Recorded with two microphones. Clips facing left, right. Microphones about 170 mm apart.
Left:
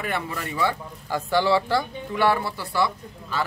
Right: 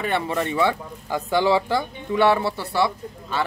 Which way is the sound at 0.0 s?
30° right (ahead or behind).